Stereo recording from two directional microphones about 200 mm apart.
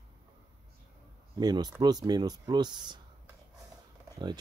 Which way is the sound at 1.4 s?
20° right (ahead or behind).